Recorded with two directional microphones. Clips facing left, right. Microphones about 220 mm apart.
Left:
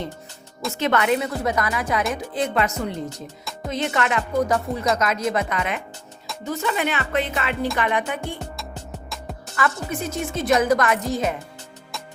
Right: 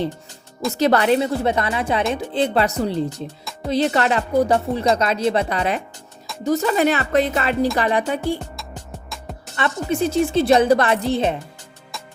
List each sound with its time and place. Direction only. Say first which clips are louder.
0.7 s speech: right 4 dB; 35° right (ahead or behind)
8.4 s music: left 1 dB; 5° left (ahead or behind)
9.6 s speech: right 5 dB; 25° right (ahead or behind)